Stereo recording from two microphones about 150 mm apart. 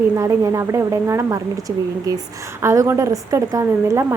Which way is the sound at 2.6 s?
20° right (ahead or behind).